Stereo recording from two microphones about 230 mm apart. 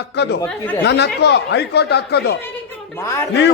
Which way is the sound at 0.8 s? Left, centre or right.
Left.